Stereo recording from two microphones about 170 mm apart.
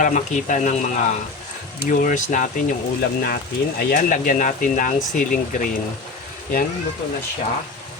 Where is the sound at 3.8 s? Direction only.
65° left (ahead or behind).